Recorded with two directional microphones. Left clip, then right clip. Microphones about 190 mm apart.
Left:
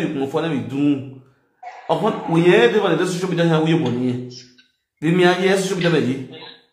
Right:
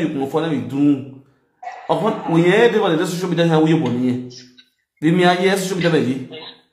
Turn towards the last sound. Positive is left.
turn(degrees=-10)  # may be behind; listen again after turning